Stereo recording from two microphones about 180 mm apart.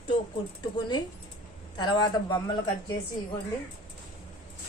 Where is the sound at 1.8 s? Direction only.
25° left (ahead or behind).